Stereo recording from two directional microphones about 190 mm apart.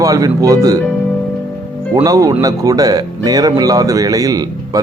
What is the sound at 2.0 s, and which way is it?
Speech, 20° right (ahead or behind).